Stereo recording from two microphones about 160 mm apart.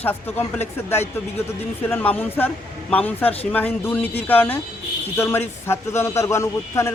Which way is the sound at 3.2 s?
40° left (ahead or behind).